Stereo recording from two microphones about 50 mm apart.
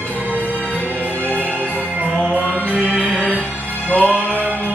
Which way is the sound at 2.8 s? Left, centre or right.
Left.